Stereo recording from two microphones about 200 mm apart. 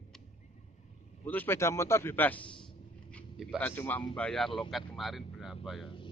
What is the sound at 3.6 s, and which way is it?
A man's voice, 10° left (ahead or behind).